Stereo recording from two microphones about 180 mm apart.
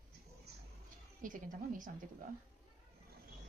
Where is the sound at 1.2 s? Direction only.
45° right (ahead or behind).